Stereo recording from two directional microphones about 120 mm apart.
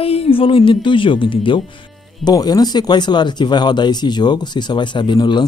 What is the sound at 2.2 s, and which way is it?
Speech, 35° left (ahead or behind).